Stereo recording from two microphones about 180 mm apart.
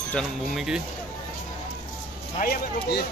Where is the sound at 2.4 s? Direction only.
55° left (ahead or behind).